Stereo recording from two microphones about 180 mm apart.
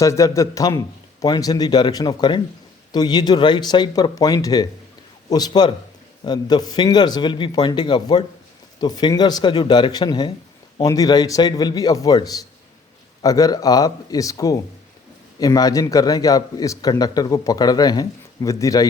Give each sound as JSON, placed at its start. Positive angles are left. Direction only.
{"t": 0.0, "sound": "a man's voice", "side_deg": 15}